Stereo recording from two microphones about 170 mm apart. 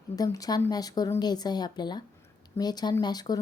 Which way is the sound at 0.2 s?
20° left (ahead or behind).